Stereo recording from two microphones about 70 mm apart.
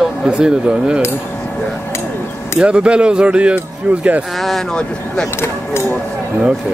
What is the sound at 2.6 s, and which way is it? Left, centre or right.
Speech, centre.